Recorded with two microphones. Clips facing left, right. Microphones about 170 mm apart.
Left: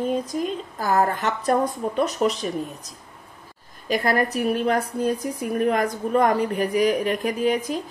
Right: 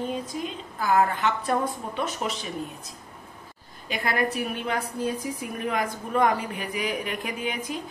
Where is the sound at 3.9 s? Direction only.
40° left (ahead or behind).